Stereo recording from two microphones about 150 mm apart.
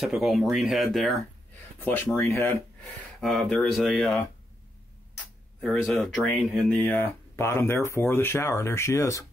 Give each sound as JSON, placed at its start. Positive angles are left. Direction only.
{"t": 0.0, "sound": "speech", "side_deg": 0}
{"t": 2.1, "sound": "speech", "side_deg": 15}
{"t": 5.6, "sound": "speech", "side_deg": 5}